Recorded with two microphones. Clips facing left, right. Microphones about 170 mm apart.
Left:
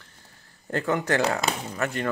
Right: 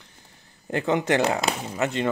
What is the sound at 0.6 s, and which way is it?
Speech, 20° right (ahead or behind).